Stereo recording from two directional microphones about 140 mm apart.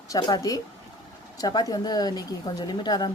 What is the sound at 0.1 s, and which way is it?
Speech, 30° left (ahead or behind).